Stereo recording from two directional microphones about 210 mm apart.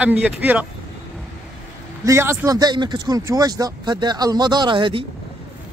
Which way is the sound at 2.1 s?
15° right (ahead or behind).